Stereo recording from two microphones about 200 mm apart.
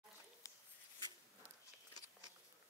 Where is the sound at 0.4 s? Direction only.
15° left (ahead or behind).